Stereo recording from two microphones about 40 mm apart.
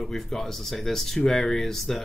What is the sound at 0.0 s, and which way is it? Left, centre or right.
Speech, centre.